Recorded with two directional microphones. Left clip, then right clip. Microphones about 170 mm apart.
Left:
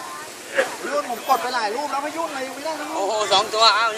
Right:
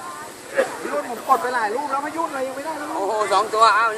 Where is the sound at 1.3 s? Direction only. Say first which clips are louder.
Right 2 dB; 50° left (ahead or behind).